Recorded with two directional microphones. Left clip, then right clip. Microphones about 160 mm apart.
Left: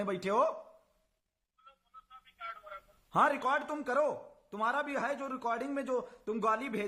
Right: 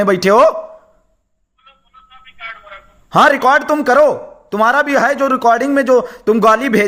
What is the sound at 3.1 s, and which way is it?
A man's voice, 35° right (ahead or behind).